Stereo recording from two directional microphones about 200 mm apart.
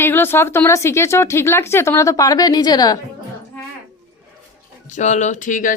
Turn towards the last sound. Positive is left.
turn(degrees=40)  # may be behind; listen again after turning